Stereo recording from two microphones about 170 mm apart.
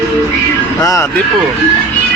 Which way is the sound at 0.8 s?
20° left (ahead or behind).